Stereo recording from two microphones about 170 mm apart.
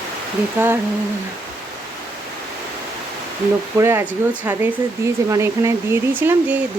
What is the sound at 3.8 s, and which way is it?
Speech, 15° right (ahead or behind).